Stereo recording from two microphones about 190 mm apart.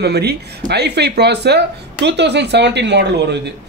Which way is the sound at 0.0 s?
60° right (ahead or behind).